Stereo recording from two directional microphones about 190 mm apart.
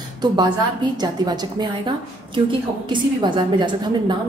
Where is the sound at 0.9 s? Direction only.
20° right (ahead or behind).